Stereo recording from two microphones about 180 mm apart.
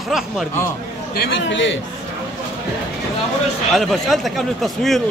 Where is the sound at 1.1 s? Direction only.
65° left (ahead or behind); by 1.8 s 90° left.